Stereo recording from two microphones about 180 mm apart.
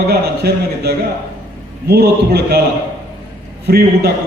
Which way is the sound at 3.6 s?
60° right (ahead or behind).